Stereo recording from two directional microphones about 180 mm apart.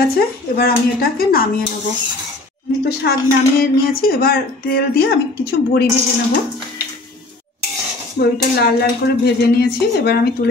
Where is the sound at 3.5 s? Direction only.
55° left (ahead or behind).